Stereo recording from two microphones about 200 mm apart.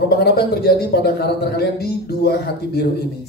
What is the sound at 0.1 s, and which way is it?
A man's voice, 50° left (ahead or behind).